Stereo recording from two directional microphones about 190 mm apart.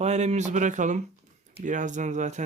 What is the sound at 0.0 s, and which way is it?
Speech, 35° right (ahead or behind).